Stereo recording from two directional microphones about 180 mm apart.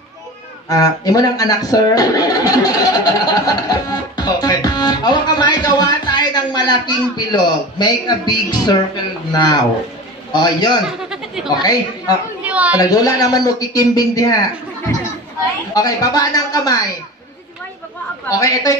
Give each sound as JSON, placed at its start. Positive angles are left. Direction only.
{"t": 0.7, "sound": "a man's voice", "side_deg": 20}
{"t": 10.9, "sound": "a sound", "side_deg": -5}
{"t": 12.7, "sound": "a man's voice", "side_deg": 20}
{"t": 15.7, "sound": "a man's voice", "side_deg": 20}
{"t": 18.3, "sound": "a man's voice", "side_deg": 20}